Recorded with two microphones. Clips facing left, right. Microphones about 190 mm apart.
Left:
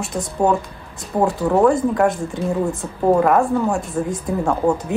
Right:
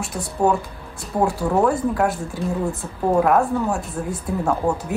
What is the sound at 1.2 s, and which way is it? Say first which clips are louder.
Speech: left 3 dB; 5° right (ahead or behind).